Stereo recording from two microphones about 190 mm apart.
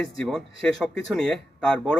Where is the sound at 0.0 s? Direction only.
5° left (ahead or behind).